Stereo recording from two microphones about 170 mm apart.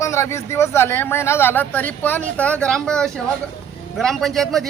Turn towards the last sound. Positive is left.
turn(degrees=0)  # may be behind; listen again after turning